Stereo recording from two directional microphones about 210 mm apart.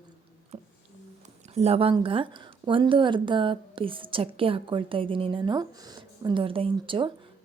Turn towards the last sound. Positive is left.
turn(degrees=-25)  # may be behind; listen again after turning